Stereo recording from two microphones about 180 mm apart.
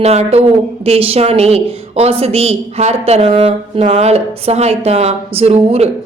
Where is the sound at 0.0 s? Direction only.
35° right (ahead or behind).